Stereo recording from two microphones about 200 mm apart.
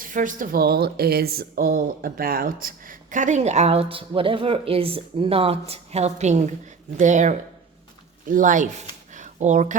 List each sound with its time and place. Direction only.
0.0 s speech: 40° right (ahead or behind)